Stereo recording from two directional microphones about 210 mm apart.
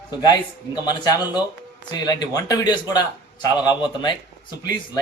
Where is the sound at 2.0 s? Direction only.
20° left (ahead or behind).